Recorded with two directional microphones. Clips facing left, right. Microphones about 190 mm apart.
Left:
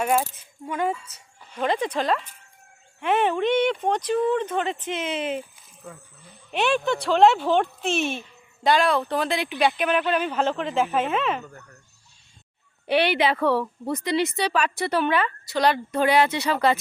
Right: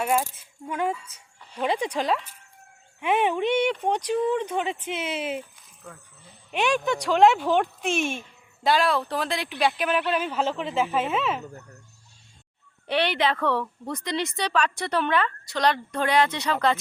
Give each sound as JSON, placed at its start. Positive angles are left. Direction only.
{"t": 0.0, "sound": "speech", "side_deg": 0}
{"t": 5.4, "sound": "a sound", "side_deg": 5}
{"t": 6.5, "sound": "speech", "side_deg": -10}
{"t": 8.6, "sound": "speech", "side_deg": 0}
{"t": 11.4, "sound": "speech", "side_deg": -20}
{"t": 12.9, "sound": "a woman's voice", "side_deg": 10}